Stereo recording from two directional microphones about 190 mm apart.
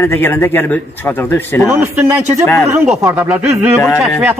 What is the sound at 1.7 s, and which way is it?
A man's voice, 15° right (ahead or behind).